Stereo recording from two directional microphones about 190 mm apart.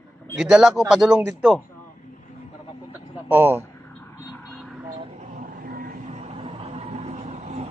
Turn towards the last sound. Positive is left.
turn(degrees=-35)  # may be behind; listen again after turning